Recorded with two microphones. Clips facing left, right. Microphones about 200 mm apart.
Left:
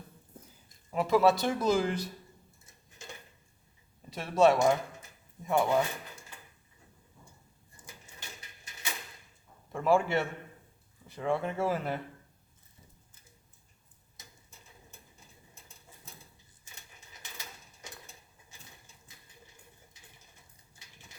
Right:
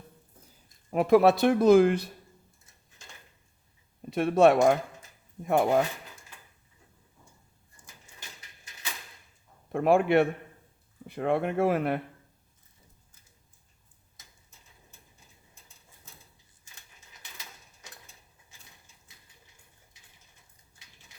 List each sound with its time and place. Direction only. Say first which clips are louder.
0.9 s speech: right 5 dB; 55° right (ahead or behind)
4.1 s speech: right 4 dB; 55° right (ahead or behind)
9.7 s speech: right 5 dB; 60° right (ahead or behind)